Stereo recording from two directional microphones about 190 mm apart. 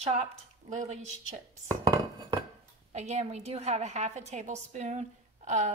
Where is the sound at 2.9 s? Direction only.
35° right (ahead or behind).